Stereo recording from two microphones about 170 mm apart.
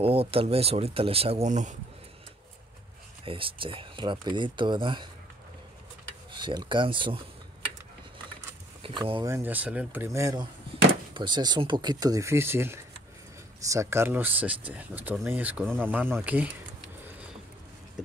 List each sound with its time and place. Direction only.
0.0 s speech: 35° right (ahead or behind)
3.3 s speech: 30° right (ahead or behind)
6.3 s speech: 25° right (ahead or behind)
8.8 s speech: 30° right (ahead or behind)
9.3 s speech: 10° right (ahead or behind)
18.0 s a sound: 5° right (ahead or behind)